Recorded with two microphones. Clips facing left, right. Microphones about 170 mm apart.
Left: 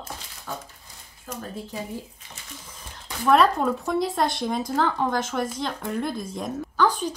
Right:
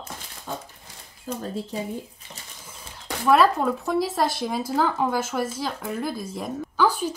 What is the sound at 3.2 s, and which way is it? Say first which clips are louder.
Speech: even; centre (ahead or behind).